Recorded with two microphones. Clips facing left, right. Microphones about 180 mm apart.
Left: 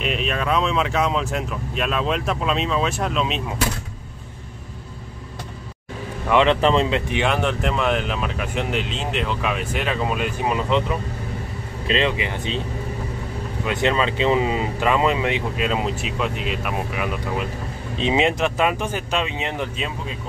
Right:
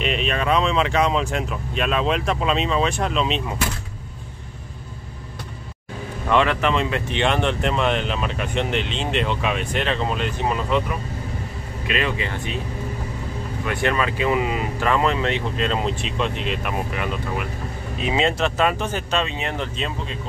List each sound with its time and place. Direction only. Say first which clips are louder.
0.0 s speech: right 1 dB; centre (ahead or behind)
6.3 s speech: left 3 dB; 25° left (ahead or behind)
6.9 s speech: left 1 dB; 10° left (ahead or behind)
11.9 s speech: left 3 dB; 20° left (ahead or behind)
13.7 s speech: left 2 dB; 20° left (ahead or behind)
17.9 s speech: left 2 dB; 20° left (ahead or behind)